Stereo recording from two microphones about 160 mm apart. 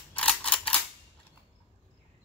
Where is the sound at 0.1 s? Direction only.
5° left (ahead or behind).